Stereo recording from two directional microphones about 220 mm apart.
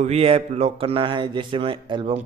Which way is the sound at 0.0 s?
25° right (ahead or behind).